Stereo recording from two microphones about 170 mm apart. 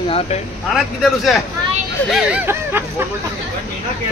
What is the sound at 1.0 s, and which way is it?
Speech, centre (ahead or behind).